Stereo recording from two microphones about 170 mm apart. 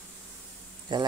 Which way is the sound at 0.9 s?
25° right (ahead or behind).